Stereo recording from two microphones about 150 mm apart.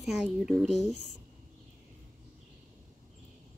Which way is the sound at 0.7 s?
50° left (ahead or behind).